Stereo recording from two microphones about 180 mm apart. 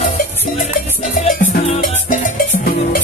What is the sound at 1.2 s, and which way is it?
Music, 50° left (ahead or behind).